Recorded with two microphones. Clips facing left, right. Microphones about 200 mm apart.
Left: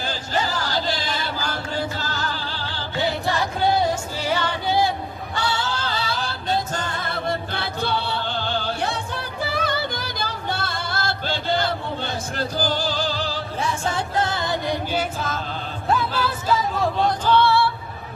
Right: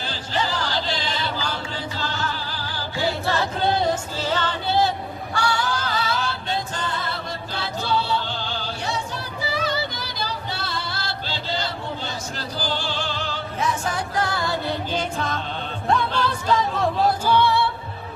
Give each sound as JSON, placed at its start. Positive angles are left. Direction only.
{"t": 0.1, "sound": "a sound", "side_deg": 45}
{"t": 1.7, "sound": "music", "side_deg": 45}
{"t": 3.0, "sound": "a sound", "side_deg": 15}
{"t": 4.2, "sound": "music", "side_deg": 10}
{"t": 5.3, "sound": "singing", "side_deg": 20}
{"t": 8.8, "sound": "music", "side_deg": 55}
{"t": 14.9, "sound": "music", "side_deg": 0}